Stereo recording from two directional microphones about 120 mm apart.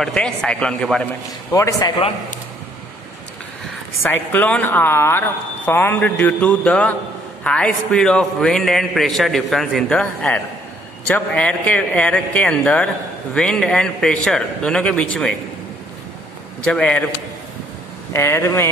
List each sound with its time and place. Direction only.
0.0 s speech: 5° left (ahead or behind)
1.5 s speech: 25° left (ahead or behind)
4.1 s a man's voice: 15° left (ahead or behind)
16.6 s speech: 10° left (ahead or behind)
18.1 s speech: 20° left (ahead or behind)